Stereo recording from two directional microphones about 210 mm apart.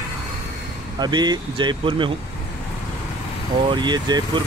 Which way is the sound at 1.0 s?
20° right (ahead or behind).